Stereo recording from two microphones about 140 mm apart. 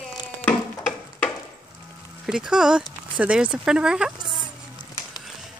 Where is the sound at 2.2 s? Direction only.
5° right (ahead or behind).